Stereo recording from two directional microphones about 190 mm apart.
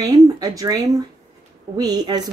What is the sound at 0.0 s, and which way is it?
Speech, 20° right (ahead or behind).